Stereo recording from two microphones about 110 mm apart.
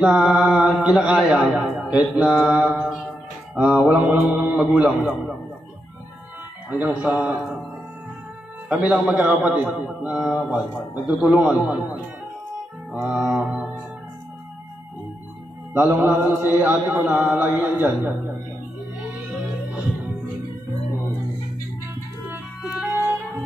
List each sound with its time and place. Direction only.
0.0 s speech: 5° right (ahead or behind)
6.7 s speech: 10° right (ahead or behind)
8.6 s speech: 10° right (ahead or behind)
13.0 s music: 5° right (ahead or behind)
15.7 s speech: 15° right (ahead or behind)
22.6 s music: 10° right (ahead or behind)